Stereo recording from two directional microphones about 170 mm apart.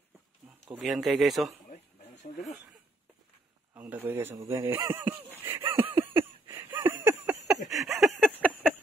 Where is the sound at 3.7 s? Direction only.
10° right (ahead or behind).